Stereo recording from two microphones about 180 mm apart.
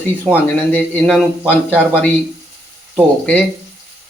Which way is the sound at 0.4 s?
10° left (ahead or behind).